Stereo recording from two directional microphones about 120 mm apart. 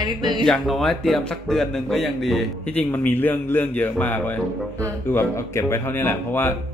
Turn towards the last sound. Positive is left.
turn(degrees=20)  # may be behind; listen again after turning